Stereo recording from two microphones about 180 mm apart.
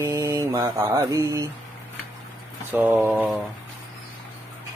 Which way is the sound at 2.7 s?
10° right (ahead or behind).